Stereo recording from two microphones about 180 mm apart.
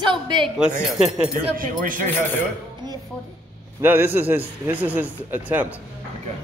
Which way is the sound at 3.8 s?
10° right (ahead or behind).